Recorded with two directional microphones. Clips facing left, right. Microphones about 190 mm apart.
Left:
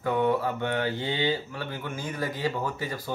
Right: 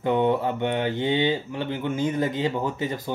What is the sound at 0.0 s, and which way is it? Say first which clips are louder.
Speech: right 3 dB; 20° right (ahead or behind).